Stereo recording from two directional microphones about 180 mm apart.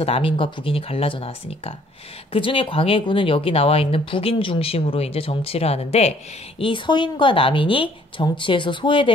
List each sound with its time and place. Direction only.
0.0 s speech: 30° left (ahead or behind)